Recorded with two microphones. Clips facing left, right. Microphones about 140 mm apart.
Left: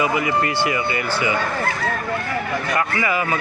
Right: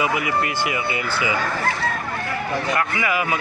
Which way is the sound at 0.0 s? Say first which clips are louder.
Left 2 dB; 10° right (ahead or behind).